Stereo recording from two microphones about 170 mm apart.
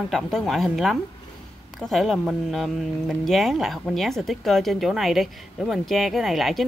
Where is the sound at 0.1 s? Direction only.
Centre (ahead or behind).